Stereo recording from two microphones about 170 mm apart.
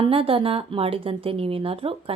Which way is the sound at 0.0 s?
30° right (ahead or behind).